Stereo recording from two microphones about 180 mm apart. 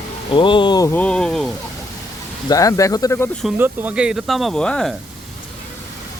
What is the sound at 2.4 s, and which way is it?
Speech, 20° left (ahead or behind).